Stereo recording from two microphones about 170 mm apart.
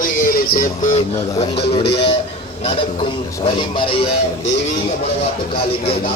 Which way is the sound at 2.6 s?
30° left (ahead or behind).